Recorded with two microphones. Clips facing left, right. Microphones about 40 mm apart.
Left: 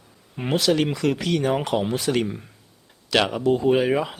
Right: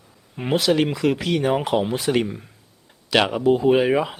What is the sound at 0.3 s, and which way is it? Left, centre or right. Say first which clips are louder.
A man's voice: right 2 dB; centre.